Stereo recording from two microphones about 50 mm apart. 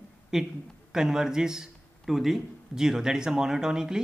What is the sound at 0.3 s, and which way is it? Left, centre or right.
A man's voice, centre.